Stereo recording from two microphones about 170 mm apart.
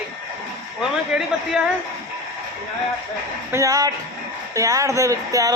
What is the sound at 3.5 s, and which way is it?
Speech, 20° right (ahead or behind).